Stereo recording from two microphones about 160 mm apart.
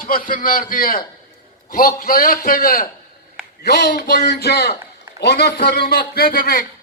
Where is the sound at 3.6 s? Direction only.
80° left.